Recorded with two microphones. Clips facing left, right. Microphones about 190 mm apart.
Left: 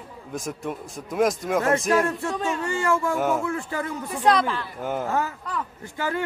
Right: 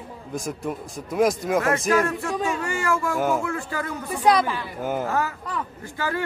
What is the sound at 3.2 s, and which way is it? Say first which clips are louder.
Speech: right 1 dB; centre (ahead or behind).